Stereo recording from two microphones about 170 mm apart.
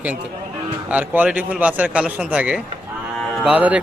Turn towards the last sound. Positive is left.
turn(degrees=-10)  # may be behind; listen again after turning